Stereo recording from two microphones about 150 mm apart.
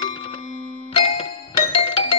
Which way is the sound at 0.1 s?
40° left (ahead or behind).